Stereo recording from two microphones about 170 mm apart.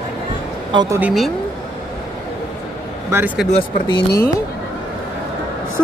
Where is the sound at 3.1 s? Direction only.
10° right (ahead or behind).